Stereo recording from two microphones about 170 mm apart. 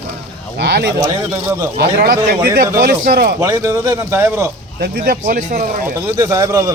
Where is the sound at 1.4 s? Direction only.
15° right (ahead or behind).